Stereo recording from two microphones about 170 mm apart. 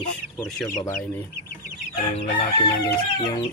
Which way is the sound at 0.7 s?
15° left (ahead or behind).